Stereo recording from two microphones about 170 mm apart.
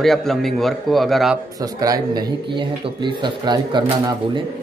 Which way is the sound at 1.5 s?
20° right (ahead or behind).